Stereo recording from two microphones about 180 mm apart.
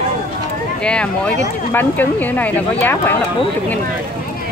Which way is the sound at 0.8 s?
5° left (ahead or behind).